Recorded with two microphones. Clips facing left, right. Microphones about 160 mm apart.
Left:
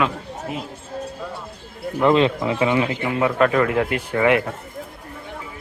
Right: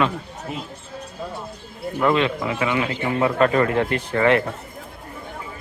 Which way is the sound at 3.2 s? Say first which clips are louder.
Even; 5° left (ahead or behind).